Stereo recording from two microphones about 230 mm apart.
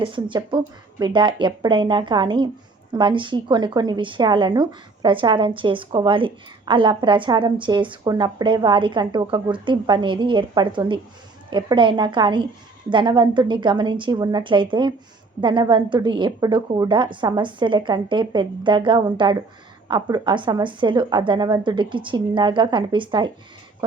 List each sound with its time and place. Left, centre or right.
0.0 s a woman's voice: right